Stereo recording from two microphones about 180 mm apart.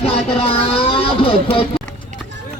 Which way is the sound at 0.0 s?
35° left (ahead or behind).